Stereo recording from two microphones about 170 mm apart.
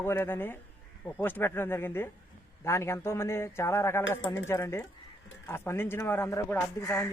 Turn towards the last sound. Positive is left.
turn(degrees=15)  # may be behind; listen again after turning